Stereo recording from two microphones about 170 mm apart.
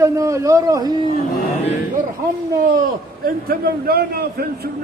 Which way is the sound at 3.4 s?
65° right (ahead or behind).